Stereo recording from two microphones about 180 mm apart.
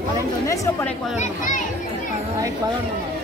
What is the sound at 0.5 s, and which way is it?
Speech, 15° left (ahead or behind).